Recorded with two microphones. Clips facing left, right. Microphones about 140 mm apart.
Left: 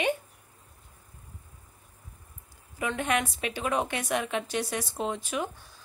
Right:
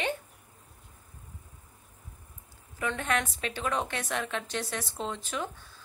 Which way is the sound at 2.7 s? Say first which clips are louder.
Left 2 dB; 15° left (ahead or behind).